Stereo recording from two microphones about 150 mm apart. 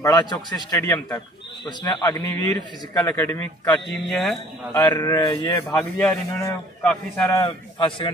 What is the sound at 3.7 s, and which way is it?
Speech, 5° left (ahead or behind).